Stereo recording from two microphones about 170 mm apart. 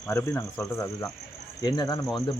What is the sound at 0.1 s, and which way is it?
Speech, 15° left (ahead or behind).